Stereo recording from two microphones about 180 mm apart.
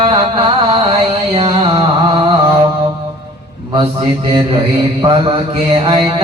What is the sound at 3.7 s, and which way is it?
Speech, 25° right (ahead or behind).